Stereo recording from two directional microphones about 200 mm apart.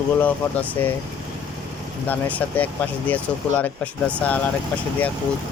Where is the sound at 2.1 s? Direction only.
10° left (ahead or behind).